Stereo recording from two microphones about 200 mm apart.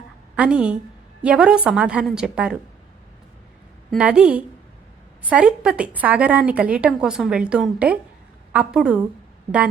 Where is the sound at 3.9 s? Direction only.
5° right (ahead or behind).